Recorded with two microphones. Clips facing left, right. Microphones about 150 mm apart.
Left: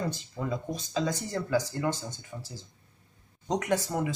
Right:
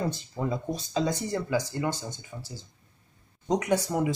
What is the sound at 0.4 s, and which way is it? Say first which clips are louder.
Speech: right 4 dB; 30° right (ahead or behind).